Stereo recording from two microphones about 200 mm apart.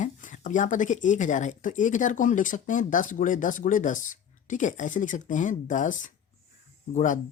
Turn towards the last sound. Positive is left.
turn(degrees=40)  # may be behind; listen again after turning